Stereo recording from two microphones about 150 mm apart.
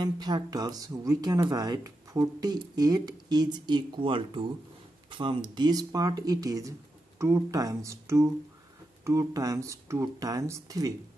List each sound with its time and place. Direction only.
0.0 s speech: 30° right (ahead or behind)